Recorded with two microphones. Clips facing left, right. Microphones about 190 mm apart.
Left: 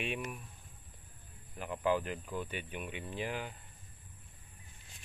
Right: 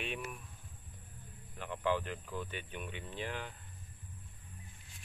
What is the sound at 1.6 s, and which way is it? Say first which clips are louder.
Speech: left 2 dB; 10° left (ahead or behind).